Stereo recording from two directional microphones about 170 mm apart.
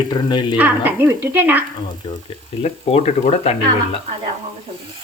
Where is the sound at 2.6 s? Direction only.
40° left (ahead or behind).